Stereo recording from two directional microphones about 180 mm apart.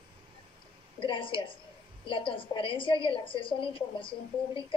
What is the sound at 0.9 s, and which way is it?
A woman's voice, 30° left (ahead or behind).